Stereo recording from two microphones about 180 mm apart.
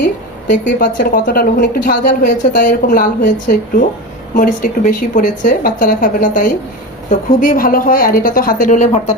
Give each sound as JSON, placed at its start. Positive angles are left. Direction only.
{"t": 0.4, "sound": "a woman's voice", "side_deg": 45}